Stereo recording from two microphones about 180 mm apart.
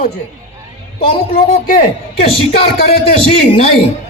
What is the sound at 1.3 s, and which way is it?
A man's voice, 50° left (ahead or behind).